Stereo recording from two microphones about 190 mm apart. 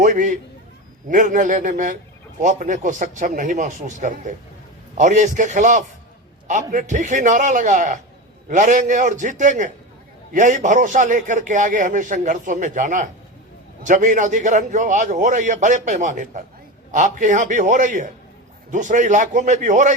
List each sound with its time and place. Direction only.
0.0 s a man's voice: 40° right (ahead or behind)